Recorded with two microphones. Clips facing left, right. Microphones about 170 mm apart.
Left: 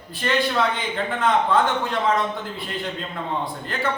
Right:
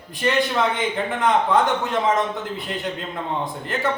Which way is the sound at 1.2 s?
20° right (ahead or behind).